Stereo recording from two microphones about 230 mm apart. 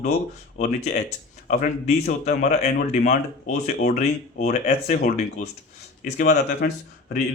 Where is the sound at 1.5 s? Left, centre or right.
Left.